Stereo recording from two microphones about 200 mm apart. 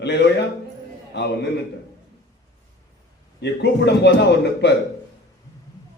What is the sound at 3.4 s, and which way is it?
A man's voice, 60° left (ahead or behind).